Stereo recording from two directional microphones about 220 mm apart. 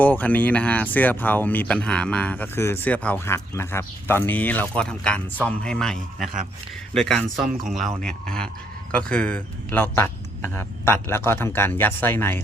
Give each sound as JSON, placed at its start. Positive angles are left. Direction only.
{"t": 0.0, "sound": "speech", "side_deg": 5}